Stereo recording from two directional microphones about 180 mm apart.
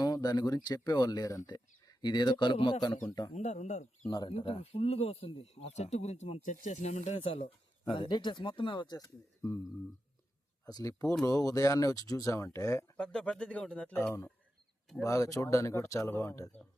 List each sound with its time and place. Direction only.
0.0 s a man's voice: 20° left (ahead or behind)
3.3 s speech: 40° left (ahead or behind)
4.1 s speech: 25° left (ahead or behind)
10.7 s speech: 20° left (ahead or behind)
13.0 s speech: 5° left (ahead or behind)